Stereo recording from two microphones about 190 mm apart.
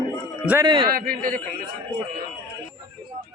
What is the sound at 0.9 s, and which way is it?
Speech, 50° right (ahead or behind).